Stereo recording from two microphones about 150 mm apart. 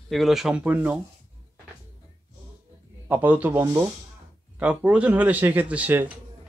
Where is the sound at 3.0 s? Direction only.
10° right (ahead or behind).